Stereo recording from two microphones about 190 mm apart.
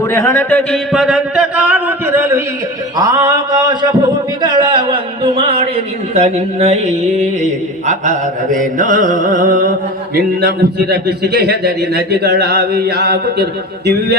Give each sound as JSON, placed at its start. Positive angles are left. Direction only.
{"t": 0.0, "sound": "speech", "side_deg": 15}
{"t": 3.0, "sound": "a sound", "side_deg": -20}
{"t": 7.4, "sound": "speech", "side_deg": -40}
{"t": 8.5, "sound": "mantra", "side_deg": -45}
{"t": 10.2, "sound": "a man's voice", "side_deg": -50}